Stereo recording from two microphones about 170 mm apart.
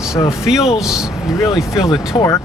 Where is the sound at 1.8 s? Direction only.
20° left (ahead or behind).